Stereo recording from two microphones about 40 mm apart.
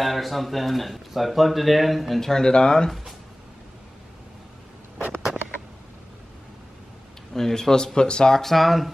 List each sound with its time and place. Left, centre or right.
0.0 s speech: centre
2.1 s speech: centre
7.3 s speech: centre
8.4 s speech: centre